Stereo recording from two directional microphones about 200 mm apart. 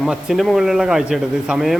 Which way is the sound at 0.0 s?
Centre (ahead or behind).